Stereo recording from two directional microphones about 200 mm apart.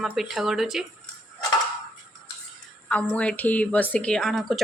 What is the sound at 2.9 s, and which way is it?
A woman's voice, 5° left (ahead or behind).